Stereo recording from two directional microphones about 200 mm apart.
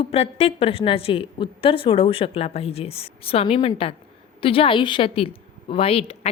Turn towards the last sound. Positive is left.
turn(degrees=30)  # may be behind; listen again after turning